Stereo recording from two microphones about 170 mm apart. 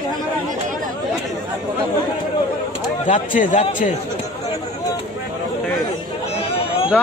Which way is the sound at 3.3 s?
50° left (ahead or behind).